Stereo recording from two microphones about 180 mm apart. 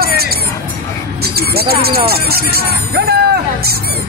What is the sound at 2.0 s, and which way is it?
Speech, 60° right (ahead or behind).